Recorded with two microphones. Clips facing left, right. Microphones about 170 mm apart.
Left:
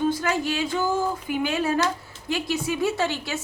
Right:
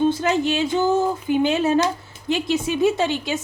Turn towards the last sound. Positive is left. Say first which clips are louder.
# right 4 dB
turn(degrees=-20)  # may be behind; listen again after turning